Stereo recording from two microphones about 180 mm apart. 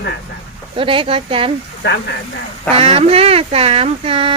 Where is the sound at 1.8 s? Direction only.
70° left (ahead or behind).